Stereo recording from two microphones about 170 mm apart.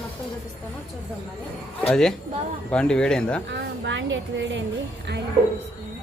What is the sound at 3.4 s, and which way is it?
A woman's voice, 90° right.